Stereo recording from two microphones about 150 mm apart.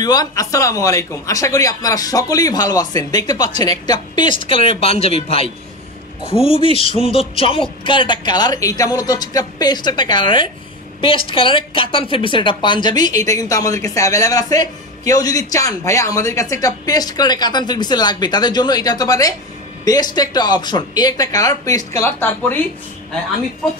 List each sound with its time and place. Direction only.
0.0 s a woman's voice: 25° left (ahead or behind)